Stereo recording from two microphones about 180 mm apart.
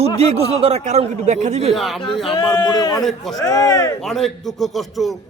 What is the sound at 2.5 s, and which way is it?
Speech, 20° left (ahead or behind).